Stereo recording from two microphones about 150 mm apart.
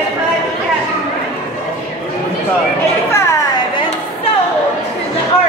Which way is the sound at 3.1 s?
20° left (ahead or behind).